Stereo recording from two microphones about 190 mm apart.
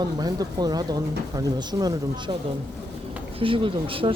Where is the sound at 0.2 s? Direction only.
20° right (ahead or behind).